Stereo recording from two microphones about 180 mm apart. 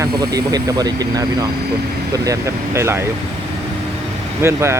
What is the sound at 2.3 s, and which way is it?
Speech, 15° right (ahead or behind).